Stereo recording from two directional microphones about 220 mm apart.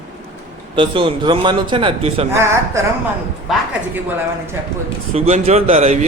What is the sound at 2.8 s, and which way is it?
Speech, 15° right (ahead or behind).